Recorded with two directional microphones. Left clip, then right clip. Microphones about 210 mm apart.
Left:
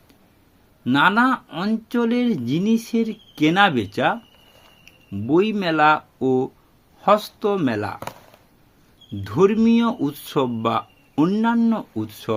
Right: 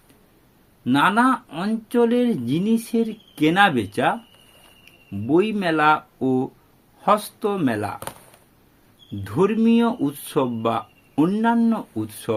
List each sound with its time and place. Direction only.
0.9 s speech: 20° left (ahead or behind)
9.2 s speech: 20° left (ahead or behind)